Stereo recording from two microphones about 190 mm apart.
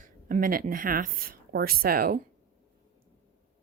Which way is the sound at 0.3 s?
45° right (ahead or behind).